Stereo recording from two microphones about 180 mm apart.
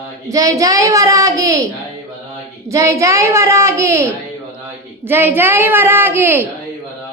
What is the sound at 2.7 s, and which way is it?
A woman's voice, 15° right (ahead or behind).